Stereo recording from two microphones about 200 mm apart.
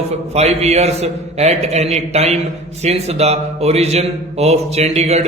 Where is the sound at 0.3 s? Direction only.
35° right (ahead or behind).